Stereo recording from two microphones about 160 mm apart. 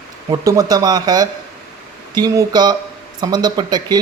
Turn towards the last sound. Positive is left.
turn(degrees=-25)  # may be behind; listen again after turning